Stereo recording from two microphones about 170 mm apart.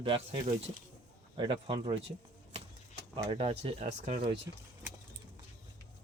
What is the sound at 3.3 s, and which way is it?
Speech, 35° right (ahead or behind).